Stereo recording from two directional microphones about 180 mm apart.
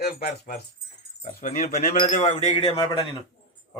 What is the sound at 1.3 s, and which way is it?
Speech, 50° left (ahead or behind).